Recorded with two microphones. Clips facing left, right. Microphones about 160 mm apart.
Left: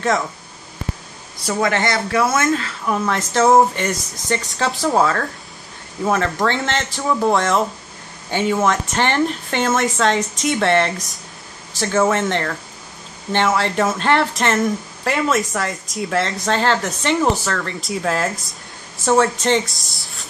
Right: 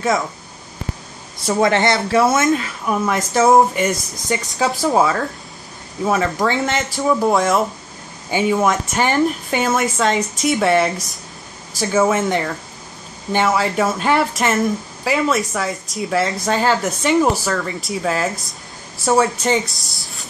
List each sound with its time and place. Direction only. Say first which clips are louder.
1.4 s speech: right 3 dB; 25° right (ahead or behind); by 20.2 s centre (ahead or behind)